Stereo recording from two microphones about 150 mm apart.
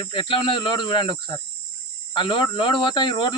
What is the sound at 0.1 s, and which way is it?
Speech, 35° left (ahead or behind).